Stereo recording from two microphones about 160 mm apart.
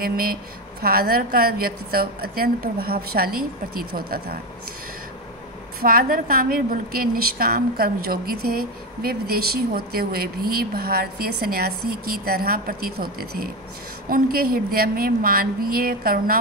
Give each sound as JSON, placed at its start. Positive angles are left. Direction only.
{"t": 0.0, "sound": "a woman's voice", "side_deg": -65}
{"t": 5.8, "sound": "a woman's voice", "side_deg": -65}